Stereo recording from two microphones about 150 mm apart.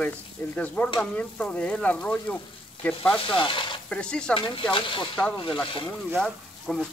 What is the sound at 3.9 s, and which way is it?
Speech, 5° left (ahead or behind).